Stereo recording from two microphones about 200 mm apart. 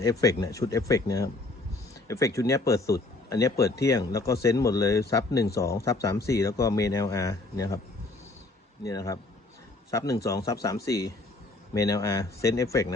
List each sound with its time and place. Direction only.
0.0 s speech: 15° left (ahead or behind)
8.8 s speech: 15° left (ahead or behind)